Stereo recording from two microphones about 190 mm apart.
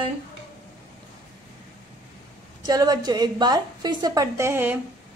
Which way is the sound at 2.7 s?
20° right (ahead or behind).